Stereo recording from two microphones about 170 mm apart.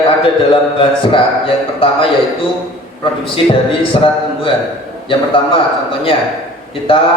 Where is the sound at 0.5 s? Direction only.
30° left (ahead or behind).